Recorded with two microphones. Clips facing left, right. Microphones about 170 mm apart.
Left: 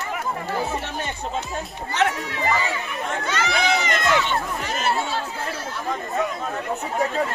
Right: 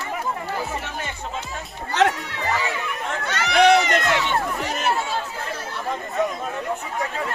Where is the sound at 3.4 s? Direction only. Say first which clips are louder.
Right 8 dB; 70° right (ahead or behind).